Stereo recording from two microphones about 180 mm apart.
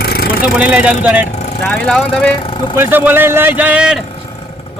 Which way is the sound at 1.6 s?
5° left (ahead or behind).